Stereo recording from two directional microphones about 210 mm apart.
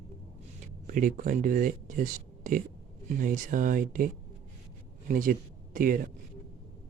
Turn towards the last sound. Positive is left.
turn(degrees=-40)  # may be behind; listen again after turning